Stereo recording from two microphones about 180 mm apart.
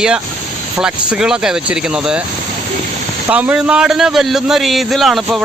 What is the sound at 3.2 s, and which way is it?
A man's voice, 10° right (ahead or behind).